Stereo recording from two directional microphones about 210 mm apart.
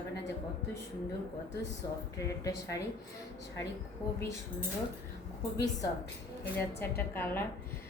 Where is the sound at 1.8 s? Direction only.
20° left (ahead or behind).